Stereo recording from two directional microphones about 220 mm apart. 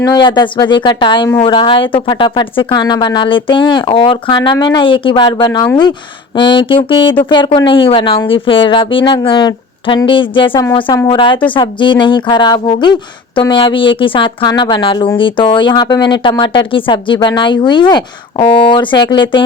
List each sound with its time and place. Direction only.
0.0 s speech: 20° left (ahead or behind)